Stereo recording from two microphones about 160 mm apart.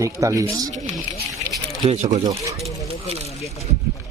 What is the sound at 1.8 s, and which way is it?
Speech, 45° right (ahead or behind).